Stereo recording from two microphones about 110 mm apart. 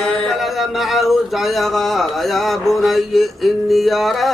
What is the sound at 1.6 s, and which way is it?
Mantra, centre (ahead or behind).